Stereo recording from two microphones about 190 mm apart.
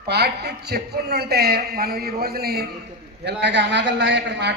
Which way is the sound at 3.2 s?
65° right (ahead or behind).